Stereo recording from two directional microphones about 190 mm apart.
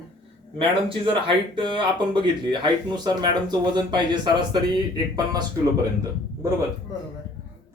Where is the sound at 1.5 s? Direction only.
25° right (ahead or behind).